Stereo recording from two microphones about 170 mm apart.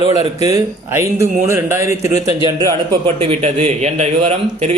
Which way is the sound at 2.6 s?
30° right (ahead or behind).